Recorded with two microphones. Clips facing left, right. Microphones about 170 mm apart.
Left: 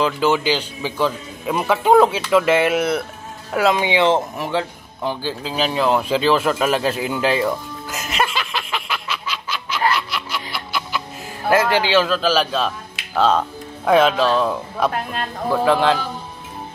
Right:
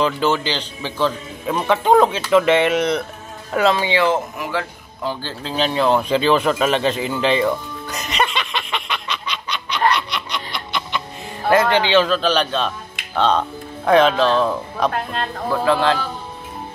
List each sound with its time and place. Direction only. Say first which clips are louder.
0.0 s a man's voice: left 1 dB; 10° left (ahead or behind)
3.7 s a man's voice: left 1 dB; 15° left (ahead or behind)
4.1 s a man's voice: left 2 dB; 25° left (ahead or behind)
5.2 s a sound: right 1 dB; 5° left (ahead or behind)
11.4 s speech: right 1 dB; 5° left (ahead or behind)